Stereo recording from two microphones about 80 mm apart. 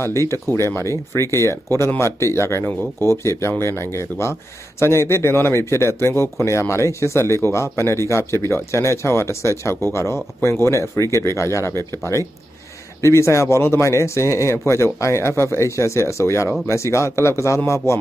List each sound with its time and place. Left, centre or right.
0.0 s speech: left